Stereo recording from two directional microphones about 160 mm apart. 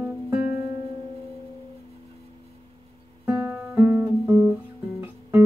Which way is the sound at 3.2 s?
15° right (ahead or behind).